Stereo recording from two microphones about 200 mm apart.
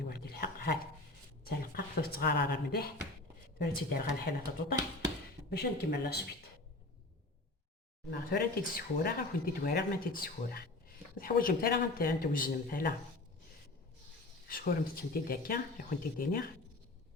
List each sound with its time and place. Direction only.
0.1 s a sound: 50° left (ahead or behind)
1.5 s speech: 50° left (ahead or behind)
5.5 s speech: 55° left (ahead or behind)
8.1 s speech: 50° left (ahead or behind)
14.4 s speech: 45° left (ahead or behind)